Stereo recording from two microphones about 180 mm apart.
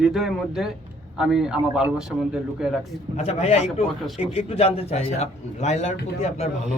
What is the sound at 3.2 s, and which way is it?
A man's voice, 40° left (ahead or behind).